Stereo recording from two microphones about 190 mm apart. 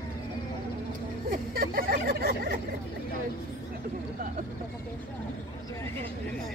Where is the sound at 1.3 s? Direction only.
50° right (ahead or behind).